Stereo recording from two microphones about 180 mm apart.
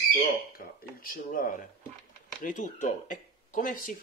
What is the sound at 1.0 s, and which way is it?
Speech, 50° left (ahead or behind).